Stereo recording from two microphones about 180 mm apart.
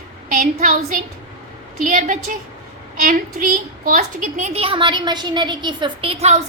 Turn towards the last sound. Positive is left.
turn(degrees=-40)  # may be behind; listen again after turning